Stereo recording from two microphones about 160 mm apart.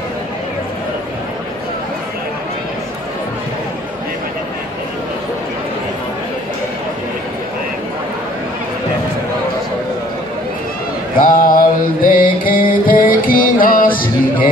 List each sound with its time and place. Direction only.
11.1 s music: 60° left (ahead or behind)